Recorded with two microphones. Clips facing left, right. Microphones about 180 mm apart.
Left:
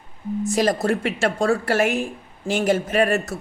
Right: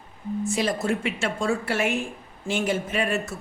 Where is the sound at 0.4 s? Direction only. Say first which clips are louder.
Left 5 dB; 40° left (ahead or behind).